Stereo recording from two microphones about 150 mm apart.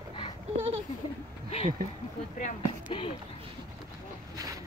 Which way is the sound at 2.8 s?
35° left (ahead or behind).